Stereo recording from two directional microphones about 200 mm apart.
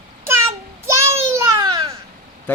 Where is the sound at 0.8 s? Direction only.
15° right (ahead or behind).